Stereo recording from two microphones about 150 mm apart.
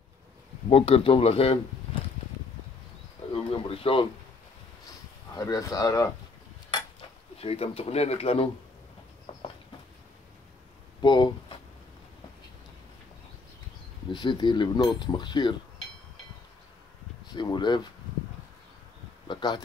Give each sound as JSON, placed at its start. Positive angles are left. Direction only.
{"t": 0.7, "sound": "speech", "side_deg": 40}
{"t": 3.2, "sound": "bird", "side_deg": 45}
{"t": 3.5, "sound": "a sound", "side_deg": 40}
{"t": 5.3, "sound": "speech", "side_deg": 20}
{"t": 7.3, "sound": "speech", "side_deg": 40}
{"t": 11.0, "sound": "speech", "side_deg": 30}
{"t": 14.1, "sound": "speech", "side_deg": 30}
{"t": 17.3, "sound": "a sound", "side_deg": 30}
{"t": 19.2, "sound": "a sound", "side_deg": 30}